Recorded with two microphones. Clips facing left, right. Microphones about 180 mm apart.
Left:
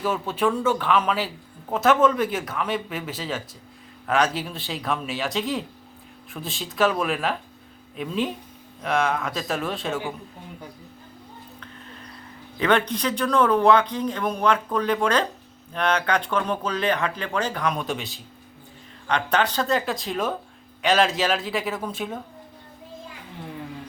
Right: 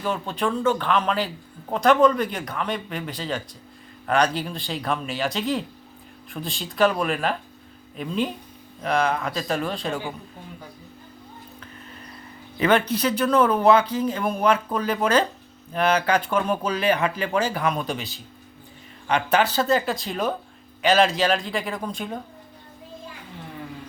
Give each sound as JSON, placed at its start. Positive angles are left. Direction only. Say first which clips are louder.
{"t": 0.0, "sound": "a man's voice", "louder": "left 2 dB", "side_deg": 5}
{"t": 12.5, "sound": "a man's voice", "louder": "right 1 dB", "side_deg": -5}